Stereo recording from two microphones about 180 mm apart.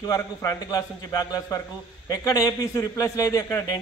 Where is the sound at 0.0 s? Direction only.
20° left (ahead or behind).